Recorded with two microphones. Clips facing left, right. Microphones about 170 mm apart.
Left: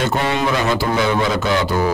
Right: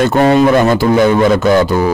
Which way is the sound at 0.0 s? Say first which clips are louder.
Right 10 dB; 50° right (ahead or behind).